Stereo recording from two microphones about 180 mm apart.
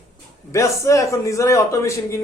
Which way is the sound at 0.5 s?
15° left (ahead or behind).